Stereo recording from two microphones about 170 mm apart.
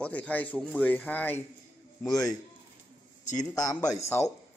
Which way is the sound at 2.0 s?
20° left (ahead or behind).